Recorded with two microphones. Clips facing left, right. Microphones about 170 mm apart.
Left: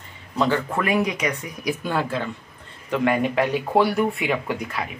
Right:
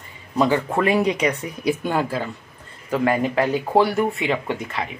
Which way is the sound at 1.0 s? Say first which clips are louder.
Right 4 dB; 30° right (ahead or behind).